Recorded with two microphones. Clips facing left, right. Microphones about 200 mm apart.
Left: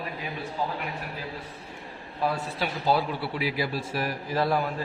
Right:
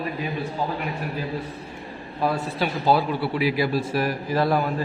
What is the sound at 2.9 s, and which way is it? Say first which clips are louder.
A man's voice: right 4 dB; 70° right (ahead or behind).